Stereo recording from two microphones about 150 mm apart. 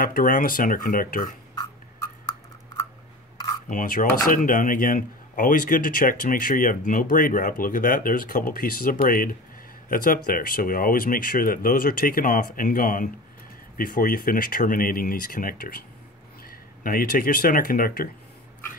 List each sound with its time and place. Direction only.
0.0 s speech: 65° left (ahead or behind)
3.6 s speech: 60° left (ahead or behind)